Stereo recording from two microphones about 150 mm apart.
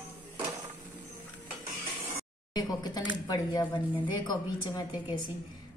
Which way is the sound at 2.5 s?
25° left (ahead or behind).